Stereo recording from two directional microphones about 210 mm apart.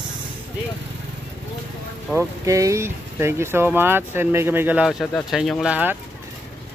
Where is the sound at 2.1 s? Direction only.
15° right (ahead or behind).